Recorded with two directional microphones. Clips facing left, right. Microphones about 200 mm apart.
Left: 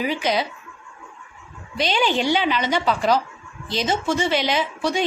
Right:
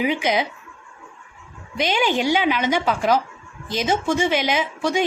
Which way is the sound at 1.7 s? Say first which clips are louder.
Even; 15° right (ahead or behind).